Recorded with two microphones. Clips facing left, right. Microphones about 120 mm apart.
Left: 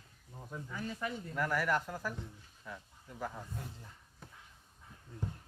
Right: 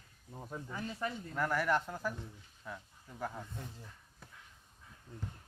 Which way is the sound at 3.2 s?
Centre (ahead or behind).